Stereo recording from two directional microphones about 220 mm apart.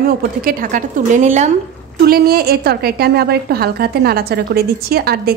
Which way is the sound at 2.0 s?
45° right (ahead or behind).